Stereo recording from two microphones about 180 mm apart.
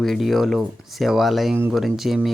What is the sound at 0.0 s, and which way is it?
Speech, centre (ahead or behind).